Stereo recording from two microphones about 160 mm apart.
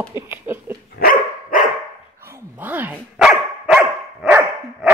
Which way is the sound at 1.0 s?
60° left (ahead or behind).